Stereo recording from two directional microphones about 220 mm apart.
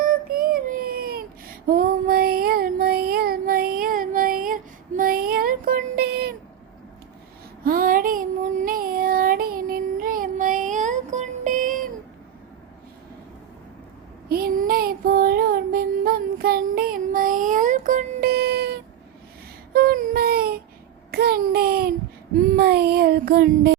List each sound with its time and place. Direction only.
0.1 s child singing: 40° right (ahead or behind)
7.6 s child singing: 40° right (ahead or behind)
14.3 s child singing: 45° right (ahead or behind)
21.1 s a sound: 45° right (ahead or behind)
22.5 s child singing: 45° right (ahead or behind)